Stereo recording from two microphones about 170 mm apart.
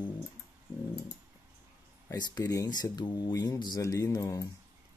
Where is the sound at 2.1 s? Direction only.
25° left (ahead or behind).